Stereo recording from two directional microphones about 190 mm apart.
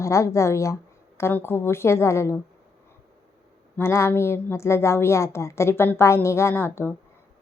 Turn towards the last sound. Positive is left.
turn(degrees=10)  # may be behind; listen again after turning